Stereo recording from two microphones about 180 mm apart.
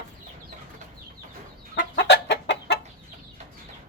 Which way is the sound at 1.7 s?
75° left (ahead or behind).